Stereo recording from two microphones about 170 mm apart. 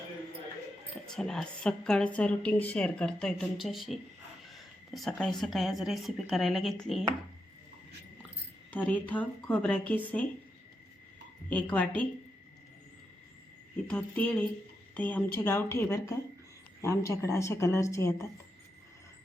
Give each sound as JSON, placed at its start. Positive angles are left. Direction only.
{"t": 1.1, "sound": "a woman's voice", "side_deg": 5}
{"t": 8.7, "sound": "a woman's voice", "side_deg": 10}
{"t": 11.4, "sound": "a woman's voice", "side_deg": 10}
{"t": 13.8, "sound": "a woman's voice", "side_deg": 10}